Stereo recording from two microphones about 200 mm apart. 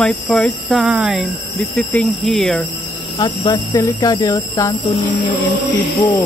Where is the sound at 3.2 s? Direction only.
20° left (ahead or behind).